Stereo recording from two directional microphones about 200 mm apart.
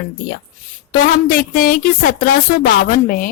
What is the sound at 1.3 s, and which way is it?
A woman's voice, 45° left (ahead or behind).